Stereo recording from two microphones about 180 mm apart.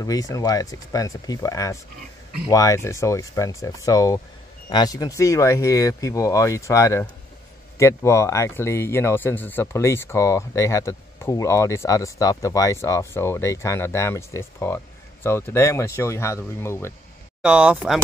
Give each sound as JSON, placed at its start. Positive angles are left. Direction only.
{"t": 0.0, "sound": "speech", "side_deg": 20}
{"t": 17.4, "sound": "speech", "side_deg": -5}